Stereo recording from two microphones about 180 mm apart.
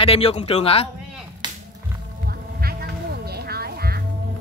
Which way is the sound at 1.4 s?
25° right (ahead or behind).